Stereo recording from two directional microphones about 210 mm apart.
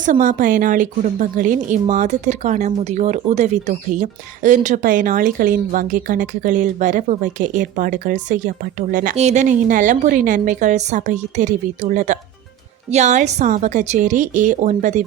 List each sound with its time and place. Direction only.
0.0 s a woman's voice: 35° right (ahead or behind)